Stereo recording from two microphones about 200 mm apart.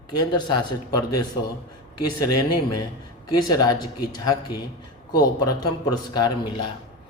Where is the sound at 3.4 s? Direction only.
20° left (ahead or behind).